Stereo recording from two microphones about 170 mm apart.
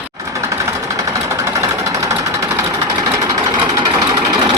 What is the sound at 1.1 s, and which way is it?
Sewing machine, 15° right (ahead or behind).